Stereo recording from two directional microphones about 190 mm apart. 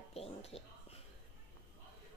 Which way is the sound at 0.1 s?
30° left (ahead or behind).